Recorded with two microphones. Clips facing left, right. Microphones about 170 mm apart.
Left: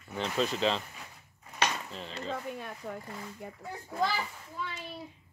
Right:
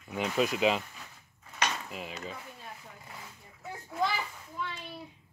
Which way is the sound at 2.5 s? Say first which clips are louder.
Left 9 dB; 70° left (ahead or behind).